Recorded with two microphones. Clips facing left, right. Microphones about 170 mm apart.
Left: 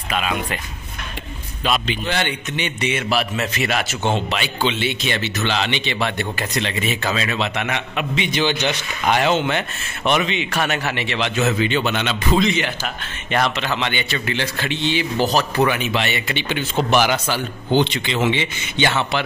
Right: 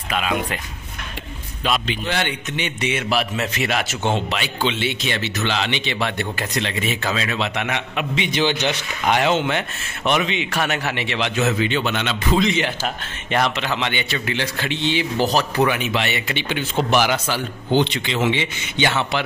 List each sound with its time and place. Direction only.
0.1 s speech: centre (ahead or behind)
1.6 s speech: 5° left (ahead or behind)
2.0 s speech: 5° right (ahead or behind)
4.1 s speech: 5° right (ahead or behind)
7.5 s speech: 15° right (ahead or behind)
8.3 s speech: 25° right (ahead or behind)
9.0 s speech: 10° right (ahead or behind)
11.4 s a man's voice: centre (ahead or behind)
12.5 s speech: 30° right (ahead or behind)
13.4 s speech: 15° right (ahead or behind)
14.9 s speech: 20° right (ahead or behind); by 18.3 s centre (ahead or behind)
18.3 s speech: 10° right (ahead or behind)